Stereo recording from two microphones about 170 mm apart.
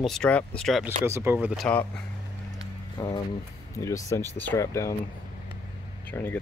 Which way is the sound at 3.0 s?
25° left (ahead or behind).